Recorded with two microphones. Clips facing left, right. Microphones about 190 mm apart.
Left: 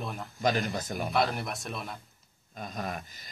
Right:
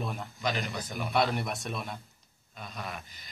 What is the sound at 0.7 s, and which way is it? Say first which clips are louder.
Speech: left 3 dB; 45° left (ahead or behind).